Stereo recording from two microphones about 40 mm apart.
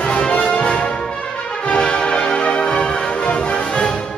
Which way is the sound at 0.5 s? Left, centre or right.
Left.